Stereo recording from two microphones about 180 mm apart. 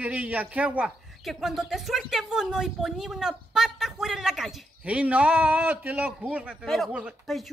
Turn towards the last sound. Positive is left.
turn(degrees=-5)  # may be behind; listen again after turning